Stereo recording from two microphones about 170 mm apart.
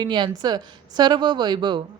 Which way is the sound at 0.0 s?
25° right (ahead or behind).